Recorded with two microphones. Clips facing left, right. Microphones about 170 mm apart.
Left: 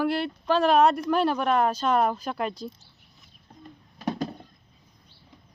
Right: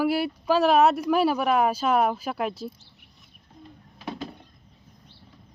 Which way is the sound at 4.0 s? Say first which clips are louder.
Left 5 dB; 40° left (ahead or behind).